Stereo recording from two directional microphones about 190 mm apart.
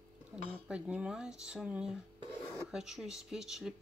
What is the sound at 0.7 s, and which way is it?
Speech, 5° right (ahead or behind).